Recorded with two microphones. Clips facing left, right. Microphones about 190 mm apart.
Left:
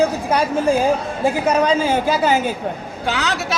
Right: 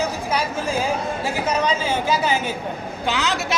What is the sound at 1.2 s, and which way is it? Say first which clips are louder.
A woman's voice: left 7 dB; 55° left (ahead or behind).